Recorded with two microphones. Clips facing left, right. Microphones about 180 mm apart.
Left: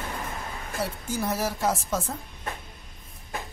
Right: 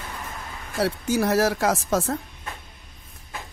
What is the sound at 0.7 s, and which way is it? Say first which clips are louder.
Speech: right 8 dB; 80° right.